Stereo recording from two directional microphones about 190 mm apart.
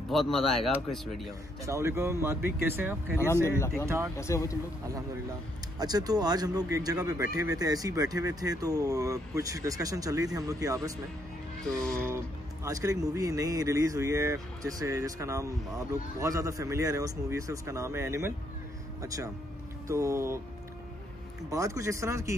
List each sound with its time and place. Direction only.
0.1 s speech: centre (ahead or behind)
1.7 s speech: 15° right (ahead or behind)
3.4 s speech: 15° left (ahead or behind)
3.8 s speech: 15° right (ahead or behind)
4.2 s speech: 15° left (ahead or behind)
5.8 s speech: 20° right (ahead or behind)
11.7 s speech: 5° left (ahead or behind)
12.6 s speech: 15° right (ahead or behind)
21.5 s speech: 15° right (ahead or behind)